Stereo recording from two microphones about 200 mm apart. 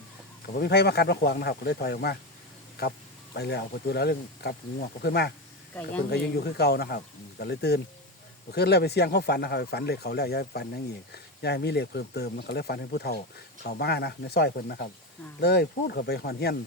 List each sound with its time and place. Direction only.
0.4 s speech: 55° left (ahead or behind)